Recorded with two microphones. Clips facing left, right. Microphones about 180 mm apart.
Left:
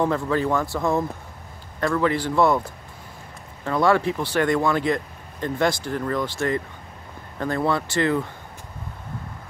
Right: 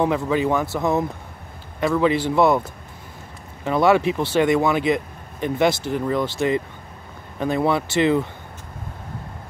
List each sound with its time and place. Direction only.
0.0 s speech: 15° right (ahead or behind)
3.6 s speech: 20° right (ahead or behind)